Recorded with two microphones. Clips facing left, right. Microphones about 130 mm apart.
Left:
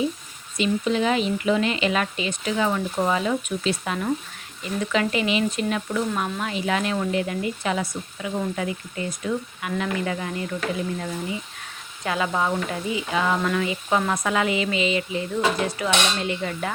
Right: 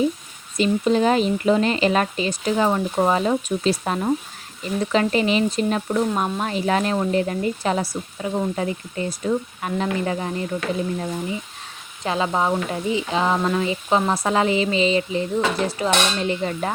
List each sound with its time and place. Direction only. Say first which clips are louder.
0.5 s speech: right 4 dB; 40° right (ahead or behind)